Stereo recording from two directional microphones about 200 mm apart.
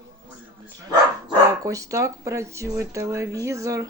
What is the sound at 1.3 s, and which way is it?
Speech, 15° right (ahead or behind).